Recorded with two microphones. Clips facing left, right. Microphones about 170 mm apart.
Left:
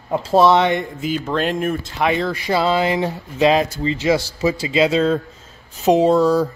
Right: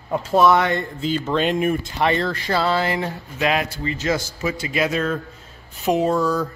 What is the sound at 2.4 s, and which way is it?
Speech, 15° left (ahead or behind).